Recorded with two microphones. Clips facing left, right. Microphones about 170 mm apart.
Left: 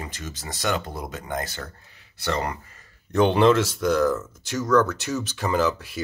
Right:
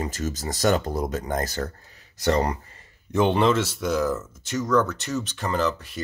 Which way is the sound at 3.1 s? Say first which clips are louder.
Left 2 dB; centre (ahead or behind).